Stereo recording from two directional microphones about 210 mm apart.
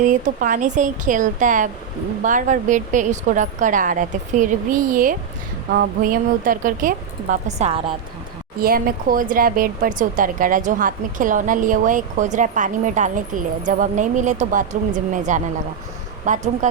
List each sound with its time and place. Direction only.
0.0 s speech: 40° right (ahead or behind)
8.5 s speech: 45° right (ahead or behind)